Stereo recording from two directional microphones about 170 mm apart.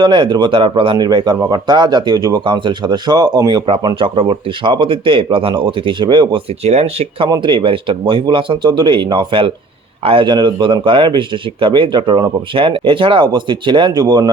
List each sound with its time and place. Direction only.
0.0 s a man's voice: 30° right (ahead or behind)
7.3 s a man's voice: 25° right (ahead or behind)